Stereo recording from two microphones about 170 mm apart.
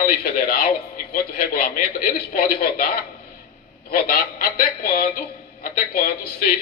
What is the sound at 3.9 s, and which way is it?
A man's voice, 60° left (ahead or behind).